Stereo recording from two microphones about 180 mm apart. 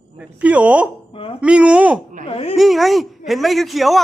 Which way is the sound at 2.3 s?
35° left (ahead or behind).